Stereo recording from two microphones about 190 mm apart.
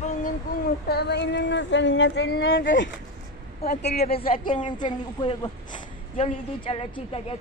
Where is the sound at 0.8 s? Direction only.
60° left (ahead or behind); by 2.6 s 75° left (ahead or behind).